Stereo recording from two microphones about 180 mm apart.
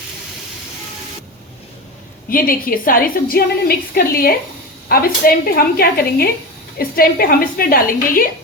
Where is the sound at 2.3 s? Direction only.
50° left (ahead or behind).